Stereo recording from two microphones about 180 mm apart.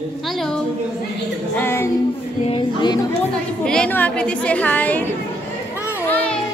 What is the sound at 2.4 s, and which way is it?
Speech, 25° left (ahead or behind).